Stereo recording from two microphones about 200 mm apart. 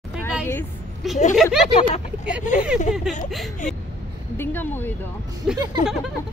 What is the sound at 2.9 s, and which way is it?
Speech, centre (ahead or behind).